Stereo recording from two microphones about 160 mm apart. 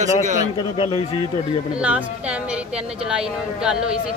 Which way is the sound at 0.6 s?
35° left (ahead or behind).